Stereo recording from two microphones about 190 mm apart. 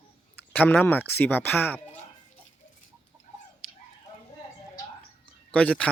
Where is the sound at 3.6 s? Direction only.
Centre (ahead or behind).